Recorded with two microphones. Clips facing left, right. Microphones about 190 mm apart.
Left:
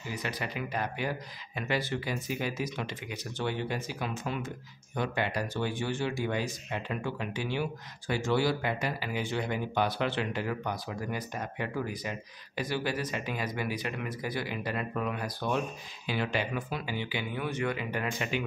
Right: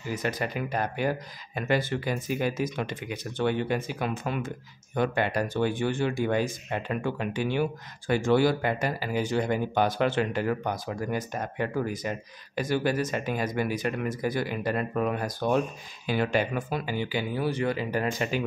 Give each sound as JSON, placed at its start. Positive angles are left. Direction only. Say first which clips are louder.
{"t": 0.1, "sound": "speech", "louder": "right 6 dB", "side_deg": -45}